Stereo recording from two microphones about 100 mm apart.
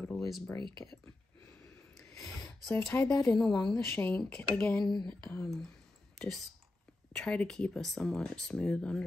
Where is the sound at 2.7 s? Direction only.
20° left (ahead or behind).